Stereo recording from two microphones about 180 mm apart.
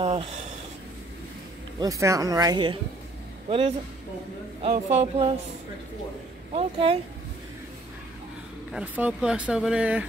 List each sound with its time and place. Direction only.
0.0 s a sound: 30° right (ahead or behind)
1.8 s a man's voice: 20° right (ahead or behind); by 5.3 s 35° right (ahead or behind)
6.5 s speech: 30° right (ahead or behind)
8.7 s speech: 5° right (ahead or behind)